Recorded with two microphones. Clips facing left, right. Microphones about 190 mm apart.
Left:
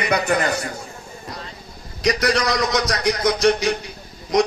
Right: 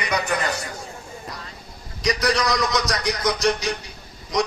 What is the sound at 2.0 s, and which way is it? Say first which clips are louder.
Speech: left 2 dB; 55° left (ahead or behind).